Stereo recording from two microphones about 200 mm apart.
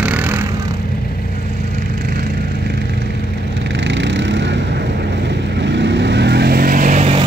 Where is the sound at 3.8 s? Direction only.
65° right (ahead or behind).